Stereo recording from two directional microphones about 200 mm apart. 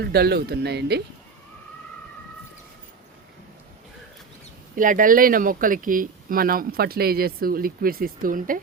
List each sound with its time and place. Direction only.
0.0 s speech: 50° right (ahead or behind)
4.7 s speech: 40° right (ahead or behind)